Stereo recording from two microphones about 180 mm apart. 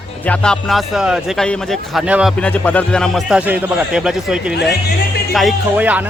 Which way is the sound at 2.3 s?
10° left (ahead or behind).